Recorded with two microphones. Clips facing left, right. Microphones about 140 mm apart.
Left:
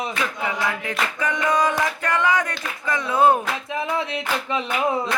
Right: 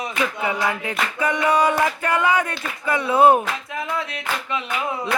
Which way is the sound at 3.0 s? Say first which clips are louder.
Right 3 dB; 30° right (ahead or behind).